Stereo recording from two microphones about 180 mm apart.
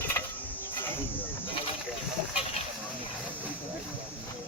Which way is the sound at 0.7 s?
10° left (ahead or behind).